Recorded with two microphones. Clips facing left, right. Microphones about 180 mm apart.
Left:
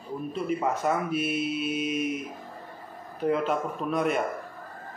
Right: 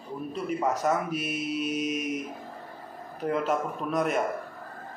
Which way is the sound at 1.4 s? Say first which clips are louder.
Left 1 dB; 40° right (ahead or behind).